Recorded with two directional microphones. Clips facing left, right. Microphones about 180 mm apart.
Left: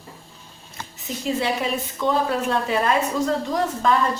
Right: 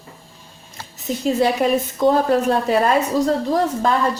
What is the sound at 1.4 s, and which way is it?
A woman's voice, 45° right (ahead or behind).